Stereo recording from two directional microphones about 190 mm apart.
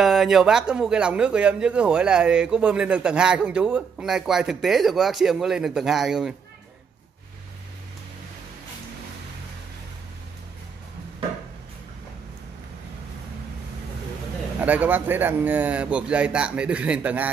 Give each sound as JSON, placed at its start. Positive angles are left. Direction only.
{"t": 0.0, "sound": "speech", "side_deg": 0}
{"t": 14.6, "sound": "speech", "side_deg": -10}